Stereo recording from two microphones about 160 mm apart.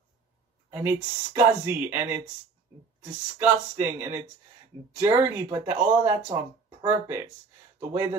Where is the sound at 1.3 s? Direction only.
15° right (ahead or behind).